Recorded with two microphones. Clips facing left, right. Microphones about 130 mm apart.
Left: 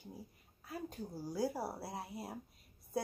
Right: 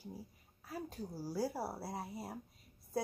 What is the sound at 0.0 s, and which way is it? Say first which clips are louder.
A woman's voice: right 2 dB; 5° right (ahead or behind).